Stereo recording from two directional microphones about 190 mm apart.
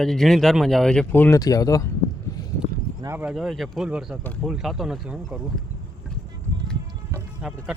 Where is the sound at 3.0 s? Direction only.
15° right (ahead or behind).